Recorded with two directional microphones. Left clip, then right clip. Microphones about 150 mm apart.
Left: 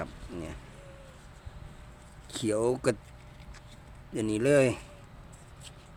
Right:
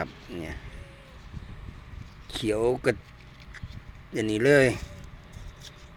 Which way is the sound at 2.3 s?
15° left (ahead or behind).